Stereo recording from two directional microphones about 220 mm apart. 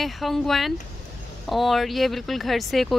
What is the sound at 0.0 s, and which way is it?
A woman's voice, centre (ahead or behind).